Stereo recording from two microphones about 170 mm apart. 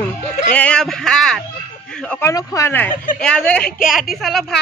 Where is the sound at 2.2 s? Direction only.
20° left (ahead or behind); by 4.4 s centre (ahead or behind).